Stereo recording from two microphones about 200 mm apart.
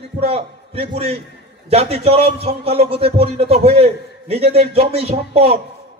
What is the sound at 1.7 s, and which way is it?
A man's voice, 30° right (ahead or behind).